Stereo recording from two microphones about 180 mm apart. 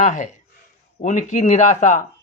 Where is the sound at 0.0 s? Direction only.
45° left (ahead or behind).